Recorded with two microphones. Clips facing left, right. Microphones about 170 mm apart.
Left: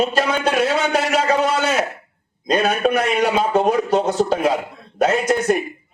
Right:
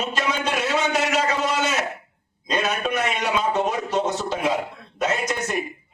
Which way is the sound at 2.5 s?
60° left (ahead or behind).